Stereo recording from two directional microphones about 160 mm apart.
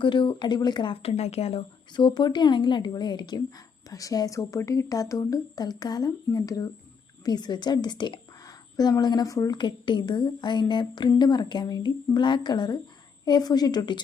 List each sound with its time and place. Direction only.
0.0 s a woman's voice: 30° left (ahead or behind)